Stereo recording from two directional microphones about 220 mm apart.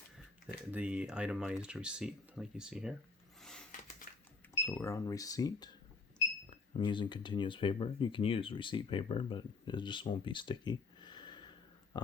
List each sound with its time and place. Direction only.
0.4 s speech: 5° right (ahead or behind)
3.4 s a sound: 5° left (ahead or behind)
4.1 s cash register: 35° left (ahead or behind)
4.5 s speech: 10° left (ahead or behind)